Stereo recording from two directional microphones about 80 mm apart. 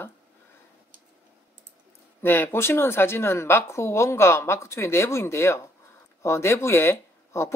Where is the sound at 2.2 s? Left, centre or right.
Left.